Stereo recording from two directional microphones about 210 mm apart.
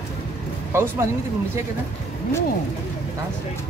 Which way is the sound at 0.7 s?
10° right (ahead or behind).